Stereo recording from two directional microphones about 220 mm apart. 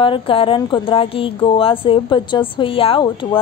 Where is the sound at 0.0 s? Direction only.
25° left (ahead or behind).